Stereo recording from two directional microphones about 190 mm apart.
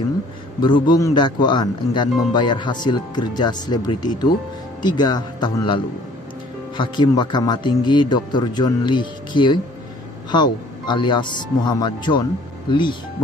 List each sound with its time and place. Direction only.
0.6 s speech: 25° left (ahead or behind)
6.8 s speech: 25° left (ahead or behind)